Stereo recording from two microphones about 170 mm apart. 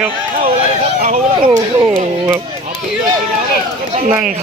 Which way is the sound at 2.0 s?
40° right (ahead or behind).